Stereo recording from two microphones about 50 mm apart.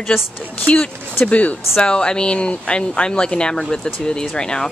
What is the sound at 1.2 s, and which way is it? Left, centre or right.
Speech, left.